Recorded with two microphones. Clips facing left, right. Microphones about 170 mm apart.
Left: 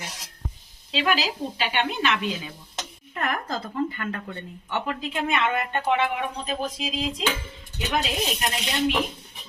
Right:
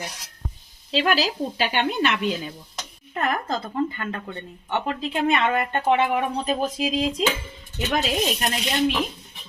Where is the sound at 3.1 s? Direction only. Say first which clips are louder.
Right 4 dB; 25° right (ahead or behind); by 6.5 s 45° right (ahead or behind).